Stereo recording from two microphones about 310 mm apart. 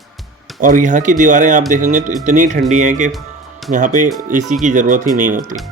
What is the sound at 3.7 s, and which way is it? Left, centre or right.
Speech, right.